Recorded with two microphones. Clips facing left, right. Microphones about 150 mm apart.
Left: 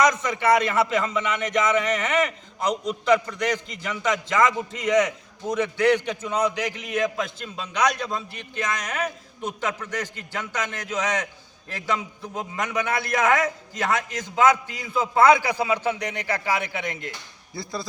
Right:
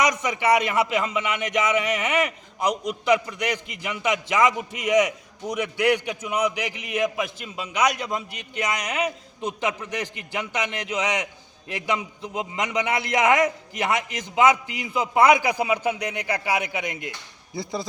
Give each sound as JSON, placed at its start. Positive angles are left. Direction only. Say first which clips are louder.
{"t": 0.0, "sound": "a man's voice", "louder": "left 2 dB", "side_deg": -15}